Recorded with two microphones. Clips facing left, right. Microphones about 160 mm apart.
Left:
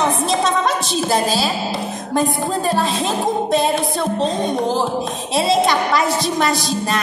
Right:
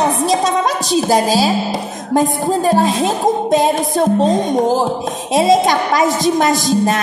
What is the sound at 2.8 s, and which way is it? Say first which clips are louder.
Music: right 5 dB; 15° right (ahead or behind).